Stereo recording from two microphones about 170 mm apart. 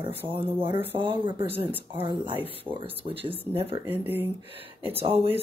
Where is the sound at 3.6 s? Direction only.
35° right (ahead or behind).